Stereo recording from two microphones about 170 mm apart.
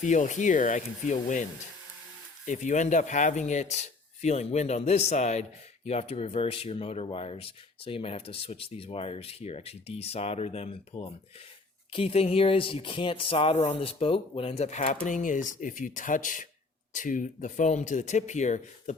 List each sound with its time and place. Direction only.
0.0 s speech: 45° left (ahead or behind)
2.5 s speech: 45° left (ahead or behind)